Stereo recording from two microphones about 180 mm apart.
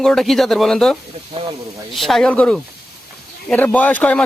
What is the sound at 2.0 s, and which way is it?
Speech, centre (ahead or behind).